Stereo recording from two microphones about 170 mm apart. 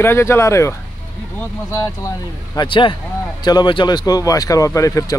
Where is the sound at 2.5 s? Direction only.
30° left (ahead or behind).